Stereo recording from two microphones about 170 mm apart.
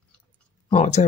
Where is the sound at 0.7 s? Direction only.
40° left (ahead or behind).